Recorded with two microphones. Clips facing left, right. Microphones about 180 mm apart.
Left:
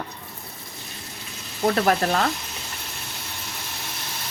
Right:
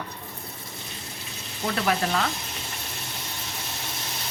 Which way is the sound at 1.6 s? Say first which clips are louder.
Left 5 dB; 45° left (ahead or behind).